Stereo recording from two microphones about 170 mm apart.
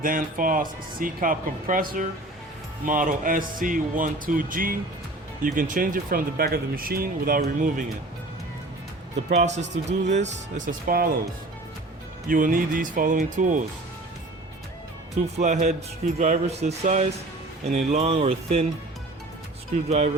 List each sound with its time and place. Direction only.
0.0 s speech: 55° right (ahead or behind)
9.3 s speech: 45° right (ahead or behind)
10.7 s speech: 55° right (ahead or behind)
12.3 s speech: 50° right (ahead or behind)
15.4 s speech: 45° right (ahead or behind)
19.7 s speech: 40° right (ahead or behind)